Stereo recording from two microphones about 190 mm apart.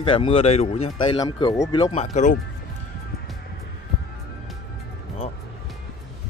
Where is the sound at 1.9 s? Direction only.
35° left (ahead or behind).